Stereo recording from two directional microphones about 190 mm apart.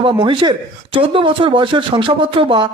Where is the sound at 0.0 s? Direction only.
25° right (ahead or behind).